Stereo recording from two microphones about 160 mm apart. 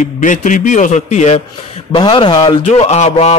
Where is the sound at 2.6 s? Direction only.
45° left (ahead or behind).